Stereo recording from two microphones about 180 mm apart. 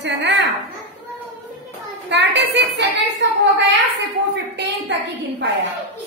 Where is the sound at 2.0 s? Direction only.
80° right.